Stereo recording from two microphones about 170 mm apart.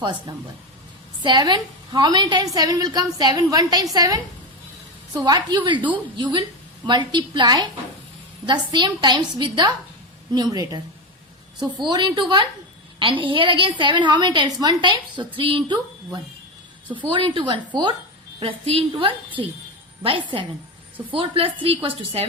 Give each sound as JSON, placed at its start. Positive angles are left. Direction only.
{"t": 0.0, "sound": "a woman's voice", "side_deg": -25}
{"t": 17.1, "sound": "a woman's voice", "side_deg": -30}